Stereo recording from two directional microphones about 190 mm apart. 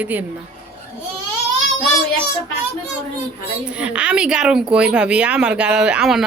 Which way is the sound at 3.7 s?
5° right (ahead or behind).